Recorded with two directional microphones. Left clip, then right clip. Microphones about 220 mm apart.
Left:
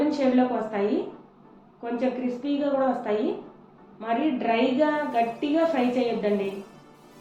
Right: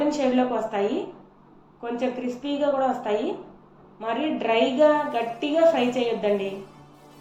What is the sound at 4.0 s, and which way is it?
A woman's voice, 30° right (ahead or behind).